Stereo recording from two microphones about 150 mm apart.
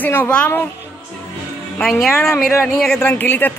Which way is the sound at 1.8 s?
5° left (ahead or behind).